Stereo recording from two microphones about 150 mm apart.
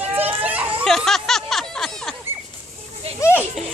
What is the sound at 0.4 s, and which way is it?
Children playing, 10° right (ahead or behind).